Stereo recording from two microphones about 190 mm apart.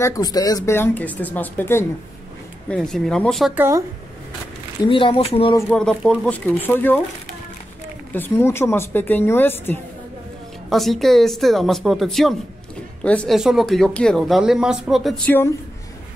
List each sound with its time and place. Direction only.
0.0 s speech: 20° left (ahead or behind); by 3.6 s centre (ahead or behind)
4.8 s speech: 25° left (ahead or behind)
5.7 s speech: 5° left (ahead or behind)
8.1 s speech: 10° left (ahead or behind)
10.7 s speech: centre (ahead or behind)